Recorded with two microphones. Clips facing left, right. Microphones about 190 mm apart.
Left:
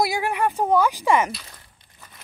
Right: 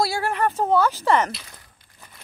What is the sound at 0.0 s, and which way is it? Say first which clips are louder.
Speech: even; 15° left (ahead or behind).